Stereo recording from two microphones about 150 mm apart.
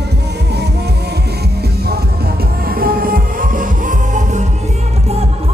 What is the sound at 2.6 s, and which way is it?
Music, 80° right.